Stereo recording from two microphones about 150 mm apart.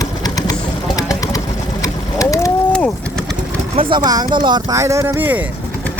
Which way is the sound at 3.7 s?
35° right (ahead or behind).